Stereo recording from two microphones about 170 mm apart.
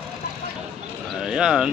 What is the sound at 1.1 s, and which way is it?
Speech, 5° right (ahead or behind).